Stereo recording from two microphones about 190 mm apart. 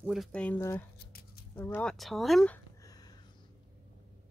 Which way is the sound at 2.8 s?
20° left (ahead or behind).